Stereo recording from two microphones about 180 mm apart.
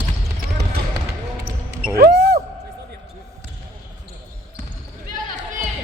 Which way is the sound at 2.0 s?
60° right (ahead or behind).